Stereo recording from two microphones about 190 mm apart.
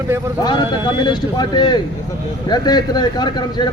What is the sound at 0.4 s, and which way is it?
Speech, 25° left (ahead or behind).